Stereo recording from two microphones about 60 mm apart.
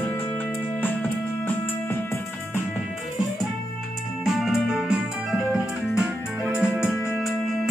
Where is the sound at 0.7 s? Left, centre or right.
Left.